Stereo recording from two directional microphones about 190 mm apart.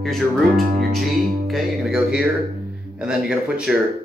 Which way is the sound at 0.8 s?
55° right (ahead or behind).